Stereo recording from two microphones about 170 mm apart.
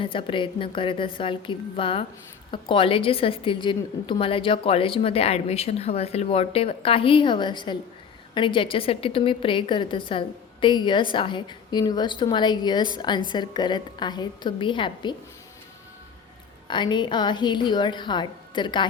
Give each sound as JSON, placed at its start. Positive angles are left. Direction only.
{"t": 0.0, "sound": "a woman's voice", "side_deg": 30}
{"t": 16.6, "sound": "a woman's voice", "side_deg": 25}